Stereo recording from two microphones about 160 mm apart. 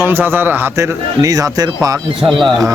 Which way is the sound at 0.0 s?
15° right (ahead or behind).